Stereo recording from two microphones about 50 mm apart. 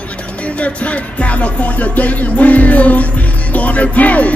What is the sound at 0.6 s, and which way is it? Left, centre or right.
Speech, left.